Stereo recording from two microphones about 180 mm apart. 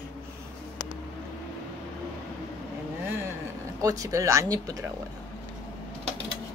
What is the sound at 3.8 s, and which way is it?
Speech, 20° right (ahead or behind).